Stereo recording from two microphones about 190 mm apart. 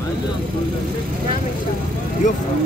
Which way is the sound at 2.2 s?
40° left (ahead or behind).